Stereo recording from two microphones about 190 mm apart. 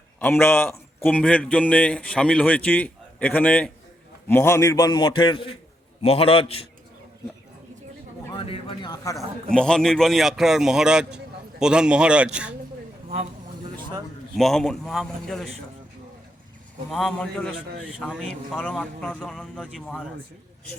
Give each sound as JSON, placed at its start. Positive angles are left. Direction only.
{"t": 0.2, "sound": "a man's voice", "side_deg": 10}
{"t": 8.3, "sound": "speech", "side_deg": 30}
{"t": 9.1, "sound": "a man's voice", "side_deg": 5}
{"t": 14.3, "sound": "a man's voice", "side_deg": 0}
{"t": 16.9, "sound": "a man's voice", "side_deg": 0}